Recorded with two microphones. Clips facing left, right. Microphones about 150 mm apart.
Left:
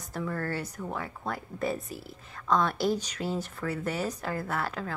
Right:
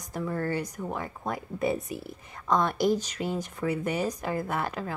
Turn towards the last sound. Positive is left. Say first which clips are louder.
# right 2 dB
turn(degrees=-10)  # may be behind; listen again after turning